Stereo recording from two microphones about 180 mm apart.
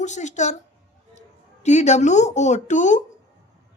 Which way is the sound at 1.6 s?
40° left (ahead or behind).